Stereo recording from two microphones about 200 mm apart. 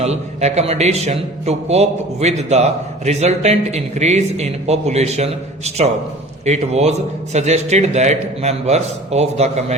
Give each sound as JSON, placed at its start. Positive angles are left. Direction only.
{"t": 0.0, "sound": "a man's voice", "side_deg": -35}